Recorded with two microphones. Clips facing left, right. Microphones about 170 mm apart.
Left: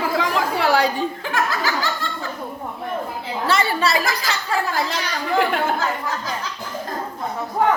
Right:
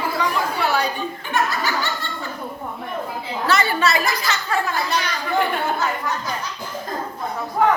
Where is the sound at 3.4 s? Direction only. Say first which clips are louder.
Even; 30° left (ahead or behind).